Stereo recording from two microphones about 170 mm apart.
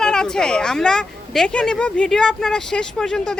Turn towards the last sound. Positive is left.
turn(degrees=5)  # may be behind; listen again after turning